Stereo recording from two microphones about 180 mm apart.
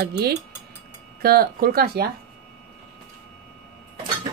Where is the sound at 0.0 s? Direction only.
60° right (ahead or behind).